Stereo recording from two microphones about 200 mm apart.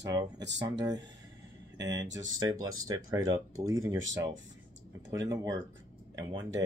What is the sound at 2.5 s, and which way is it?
Speech, 90° right.